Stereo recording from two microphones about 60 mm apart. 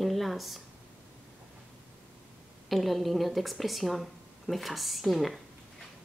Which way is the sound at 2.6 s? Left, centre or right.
Centre.